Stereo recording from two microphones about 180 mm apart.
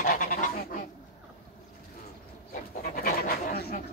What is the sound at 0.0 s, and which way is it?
Goose, 50° left (ahead or behind).